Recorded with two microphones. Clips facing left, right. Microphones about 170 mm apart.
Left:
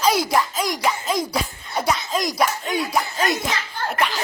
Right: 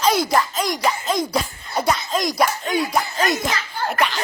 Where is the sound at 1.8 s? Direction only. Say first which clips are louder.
Right 1 dB; centre (ahead or behind).